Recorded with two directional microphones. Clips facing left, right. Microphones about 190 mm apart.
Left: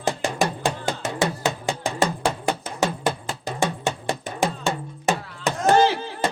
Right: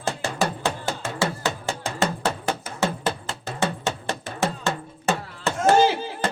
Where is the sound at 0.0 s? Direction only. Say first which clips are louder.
Left 2 dB; 15° left (ahead or behind).